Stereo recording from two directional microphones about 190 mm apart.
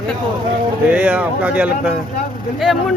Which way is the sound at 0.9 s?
10° right (ahead or behind).